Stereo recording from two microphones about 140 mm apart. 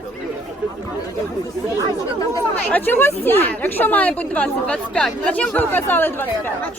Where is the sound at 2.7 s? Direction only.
15° left (ahead or behind).